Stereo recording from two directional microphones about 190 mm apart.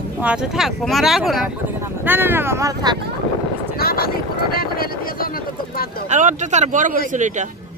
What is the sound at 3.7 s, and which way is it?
Vehicle, 50° left (ahead or behind).